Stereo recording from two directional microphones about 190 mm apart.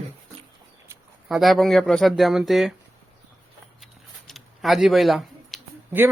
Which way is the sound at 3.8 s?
Centre (ahead or behind).